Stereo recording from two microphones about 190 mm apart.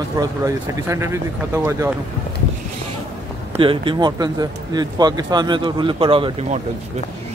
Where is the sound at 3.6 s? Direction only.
25° right (ahead or behind).